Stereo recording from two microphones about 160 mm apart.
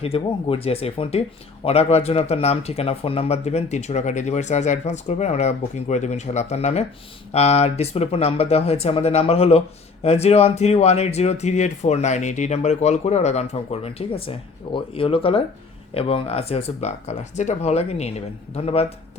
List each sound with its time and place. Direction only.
0.0 s speech: 35° left (ahead or behind)